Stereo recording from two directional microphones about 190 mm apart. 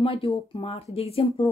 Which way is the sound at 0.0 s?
30° left (ahead or behind).